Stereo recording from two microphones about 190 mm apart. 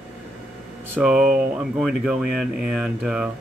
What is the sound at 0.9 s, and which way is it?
Speech, 5° right (ahead or behind).